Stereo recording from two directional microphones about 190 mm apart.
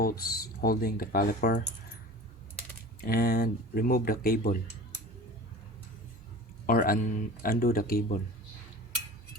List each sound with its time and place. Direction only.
0.0 s speech: 50° left (ahead or behind)
3.0 s speech: 50° left (ahead or behind)
6.7 s speech: 50° left (ahead or behind)